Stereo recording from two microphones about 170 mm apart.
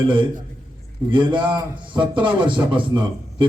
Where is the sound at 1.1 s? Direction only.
30° right (ahead or behind).